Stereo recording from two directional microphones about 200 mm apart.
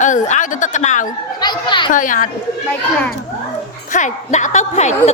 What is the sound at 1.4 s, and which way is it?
Speech, 20° left (ahead or behind).